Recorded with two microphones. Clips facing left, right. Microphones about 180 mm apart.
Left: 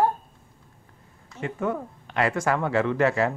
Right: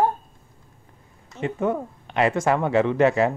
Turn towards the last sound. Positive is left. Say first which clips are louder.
# right 3 dB
turn(degrees=-20)  # may be behind; listen again after turning